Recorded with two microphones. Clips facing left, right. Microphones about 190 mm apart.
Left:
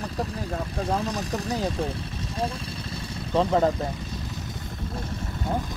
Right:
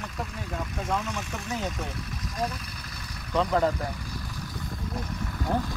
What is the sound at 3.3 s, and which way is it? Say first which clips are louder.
Speech: left 3 dB; 25° left (ahead or behind).